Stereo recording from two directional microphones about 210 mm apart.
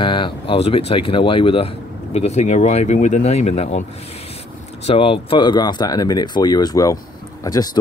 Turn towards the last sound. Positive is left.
turn(degrees=20)  # may be behind; listen again after turning